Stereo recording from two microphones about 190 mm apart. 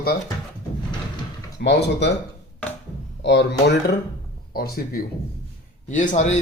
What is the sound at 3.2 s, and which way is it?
Speech, 65° left (ahead or behind).